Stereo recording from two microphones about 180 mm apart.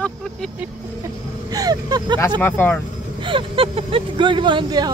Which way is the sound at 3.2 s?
30° right (ahead or behind).